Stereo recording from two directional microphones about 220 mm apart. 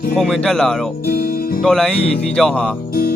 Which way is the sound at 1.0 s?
45° left (ahead or behind).